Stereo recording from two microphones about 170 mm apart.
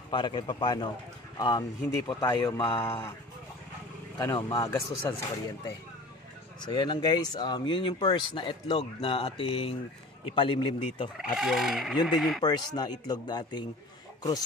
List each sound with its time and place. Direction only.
0.1 s speech: 25° left (ahead or behind)
4.2 s speech: 25° left (ahead or behind)
6.6 s speech: 25° left (ahead or behind)
11.1 s speech: centre (ahead or behind)
12.4 s speech: 25° left (ahead or behind)